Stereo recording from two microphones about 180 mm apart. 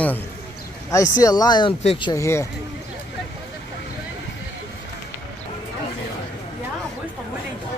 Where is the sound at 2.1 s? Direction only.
15° left (ahead or behind).